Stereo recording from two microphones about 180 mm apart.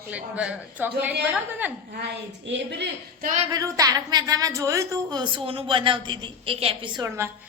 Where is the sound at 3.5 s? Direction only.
20° right (ahead or behind).